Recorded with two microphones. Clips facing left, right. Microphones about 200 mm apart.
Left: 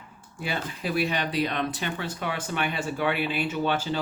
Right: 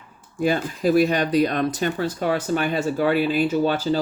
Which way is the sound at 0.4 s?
40° right (ahead or behind).